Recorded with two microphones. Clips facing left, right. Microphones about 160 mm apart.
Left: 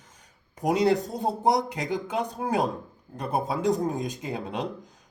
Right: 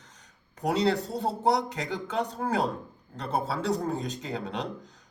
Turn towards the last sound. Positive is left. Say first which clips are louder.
# left 2 dB
turn(degrees=15)  # may be behind; listen again after turning